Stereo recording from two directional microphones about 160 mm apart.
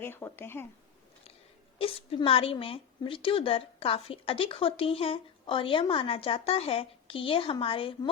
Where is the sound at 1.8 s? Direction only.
35° left (ahead or behind).